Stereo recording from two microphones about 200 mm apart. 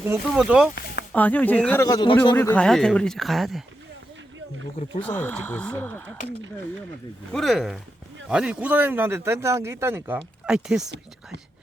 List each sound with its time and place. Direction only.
0.0 s a man's voice: 10° right (ahead or behind)
1.1 s speech: 10° left (ahead or behind)
2.3 s speech: 10° left (ahead or behind)
5.0 s speech: 10° left (ahead or behind)
7.3 s a man's voice: centre (ahead or behind)